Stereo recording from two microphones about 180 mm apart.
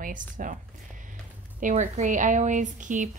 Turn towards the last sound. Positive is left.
turn(degrees=-45)  # may be behind; listen again after turning